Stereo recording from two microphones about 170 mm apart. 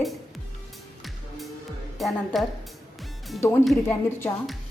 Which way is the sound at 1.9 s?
Centre (ahead or behind).